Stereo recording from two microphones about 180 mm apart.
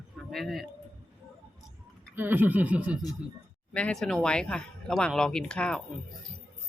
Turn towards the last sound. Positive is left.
turn(degrees=5)  # may be behind; listen again after turning